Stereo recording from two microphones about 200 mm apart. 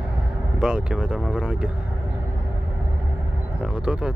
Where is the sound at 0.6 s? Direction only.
5° right (ahead or behind).